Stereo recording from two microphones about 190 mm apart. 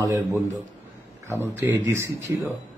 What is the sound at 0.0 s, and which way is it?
Speech, 15° right (ahead or behind).